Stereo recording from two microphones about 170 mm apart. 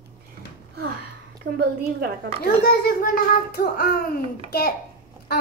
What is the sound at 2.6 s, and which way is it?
A child's voice, 55° left (ahead or behind).